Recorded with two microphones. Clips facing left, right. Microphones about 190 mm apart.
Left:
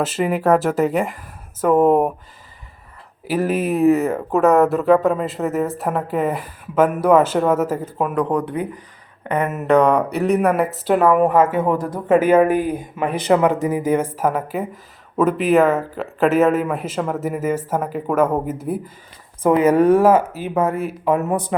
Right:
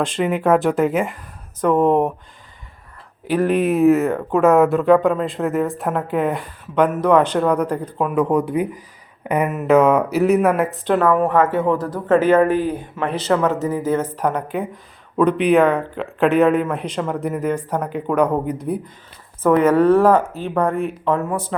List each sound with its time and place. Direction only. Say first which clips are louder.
0.0 s speech: even; 5° left (ahead or behind)
3.2 s speech: right 2 dB; 5° left (ahead or behind)
8.1 s speech: right 4 dB; 10° right (ahead or behind); by 21.5 s 15° left (ahead or behind)